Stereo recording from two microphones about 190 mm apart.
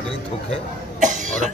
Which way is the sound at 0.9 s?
40° right (ahead or behind).